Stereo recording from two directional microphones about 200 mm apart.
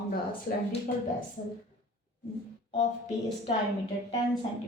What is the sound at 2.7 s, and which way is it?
Speech, 35° left (ahead or behind).